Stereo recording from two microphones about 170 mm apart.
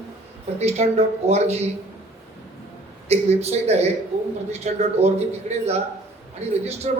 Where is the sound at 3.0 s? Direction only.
40° right (ahead or behind).